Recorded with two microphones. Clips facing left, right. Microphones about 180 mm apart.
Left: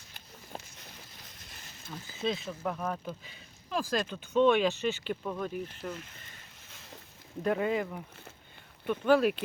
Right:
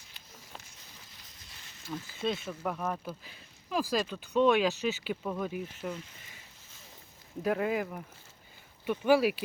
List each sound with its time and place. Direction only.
1.9 s speech: 5° right (ahead or behind)
6.7 s boat: 75° left (ahead or behind)
7.4 s speech: 5° right (ahead or behind)